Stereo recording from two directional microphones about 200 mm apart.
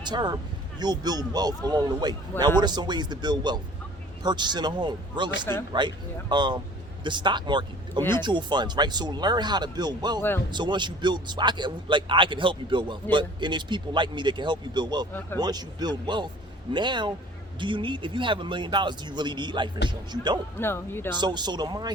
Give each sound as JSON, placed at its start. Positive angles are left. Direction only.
{"t": 0.0, "sound": "a man's voice", "side_deg": -20}
{"t": 10.2, "sound": "speech", "side_deg": 10}
{"t": 10.5, "sound": "a man's voice", "side_deg": -20}
{"t": 20.6, "sound": "speech", "side_deg": 10}
{"t": 21.2, "sound": "a man's voice", "side_deg": -20}